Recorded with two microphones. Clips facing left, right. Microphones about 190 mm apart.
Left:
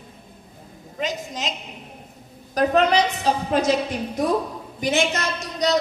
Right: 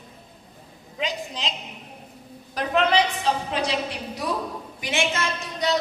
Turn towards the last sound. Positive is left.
turn(degrees=40)  # may be behind; listen again after turning